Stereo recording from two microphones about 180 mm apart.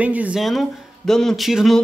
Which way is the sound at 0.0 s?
10° right (ahead or behind).